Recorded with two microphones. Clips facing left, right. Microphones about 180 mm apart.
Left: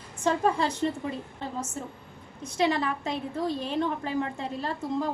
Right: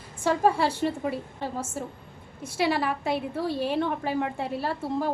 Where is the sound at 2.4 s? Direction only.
10° right (ahead or behind).